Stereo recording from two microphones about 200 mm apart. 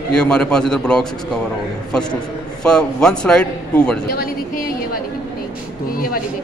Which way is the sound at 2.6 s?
5° left (ahead or behind).